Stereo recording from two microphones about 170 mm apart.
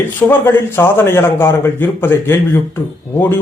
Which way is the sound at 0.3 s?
15° left (ahead or behind).